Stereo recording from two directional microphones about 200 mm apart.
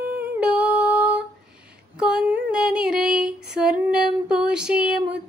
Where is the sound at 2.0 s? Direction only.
5° right (ahead or behind).